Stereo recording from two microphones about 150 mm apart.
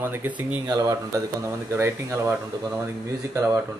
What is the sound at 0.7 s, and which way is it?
Speech, 20° right (ahead or behind).